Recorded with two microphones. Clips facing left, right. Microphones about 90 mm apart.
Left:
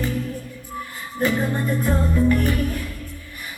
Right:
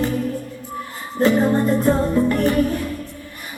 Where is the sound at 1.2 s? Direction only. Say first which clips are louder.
Right 6 dB; 25° right (ahead or behind).